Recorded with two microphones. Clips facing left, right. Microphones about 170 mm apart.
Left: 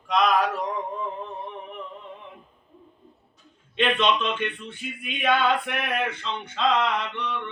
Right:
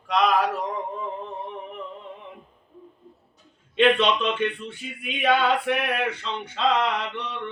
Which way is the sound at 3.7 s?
5° right (ahead or behind).